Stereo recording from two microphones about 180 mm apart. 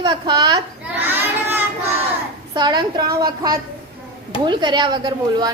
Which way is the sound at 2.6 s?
25° right (ahead or behind).